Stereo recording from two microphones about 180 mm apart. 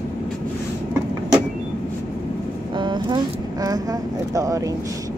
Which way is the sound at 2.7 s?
25° right (ahead or behind).